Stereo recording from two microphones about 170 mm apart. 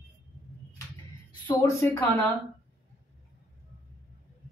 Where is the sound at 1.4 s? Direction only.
15° left (ahead or behind).